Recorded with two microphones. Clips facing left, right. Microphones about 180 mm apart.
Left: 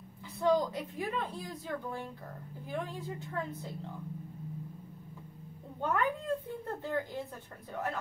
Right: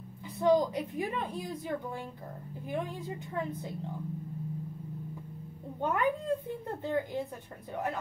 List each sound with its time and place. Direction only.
0.4 s a woman's voice: 20° right (ahead or behind)
5.8 s a woman's voice: 20° right (ahead or behind)